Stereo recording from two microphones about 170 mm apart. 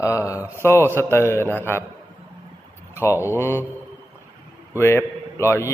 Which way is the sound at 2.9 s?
15° left (ahead or behind).